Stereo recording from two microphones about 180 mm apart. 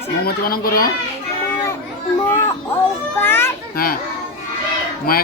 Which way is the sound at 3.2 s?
10° left (ahead or behind).